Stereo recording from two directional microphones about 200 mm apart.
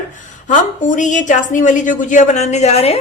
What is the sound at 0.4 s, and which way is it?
A woman's voice, 40° left (ahead or behind).